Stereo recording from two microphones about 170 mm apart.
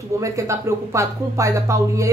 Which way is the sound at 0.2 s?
15° right (ahead or behind).